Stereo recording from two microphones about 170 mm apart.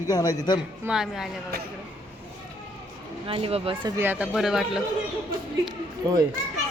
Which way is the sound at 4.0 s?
10° right (ahead or behind).